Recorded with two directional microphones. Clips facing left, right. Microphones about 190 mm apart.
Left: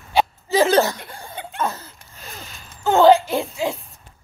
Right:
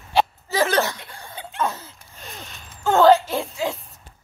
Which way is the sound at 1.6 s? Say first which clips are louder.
Even; centre (ahead or behind).